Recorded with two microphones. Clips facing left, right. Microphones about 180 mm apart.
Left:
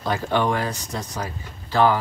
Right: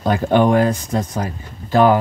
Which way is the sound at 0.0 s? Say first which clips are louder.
Right 7 dB; 50° right (ahead or behind).